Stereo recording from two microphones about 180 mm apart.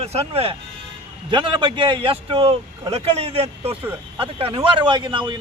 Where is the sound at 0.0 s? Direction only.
35° right (ahead or behind).